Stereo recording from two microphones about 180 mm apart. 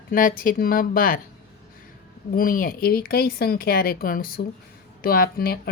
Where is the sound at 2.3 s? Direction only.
50° left (ahead or behind).